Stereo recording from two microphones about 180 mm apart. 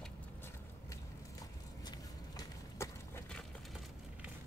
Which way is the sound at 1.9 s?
20° left (ahead or behind).